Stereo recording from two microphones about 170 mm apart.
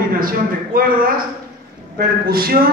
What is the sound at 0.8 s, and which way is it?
Speech, 60° right (ahead or behind).